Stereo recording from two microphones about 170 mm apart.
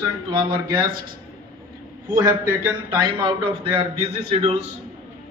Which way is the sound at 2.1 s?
20° right (ahead or behind).